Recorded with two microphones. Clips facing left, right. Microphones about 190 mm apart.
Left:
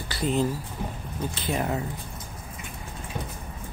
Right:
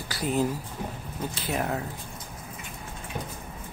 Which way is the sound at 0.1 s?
10° right (ahead or behind).